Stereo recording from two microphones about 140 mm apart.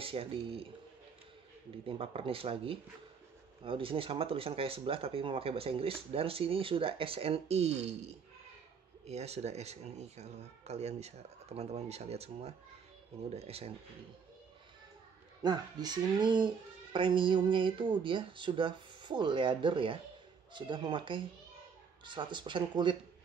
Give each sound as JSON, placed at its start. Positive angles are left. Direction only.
{"t": 0.0, "sound": "speech", "side_deg": -40}
{"t": 1.9, "sound": "speech", "side_deg": -40}
{"t": 15.4, "sound": "speech", "side_deg": -30}